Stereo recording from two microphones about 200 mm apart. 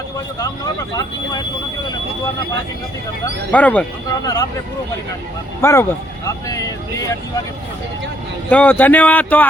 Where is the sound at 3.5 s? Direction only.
5° left (ahead or behind).